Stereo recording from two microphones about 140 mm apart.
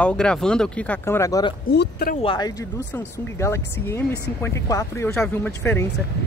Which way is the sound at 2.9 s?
15° left (ahead or behind).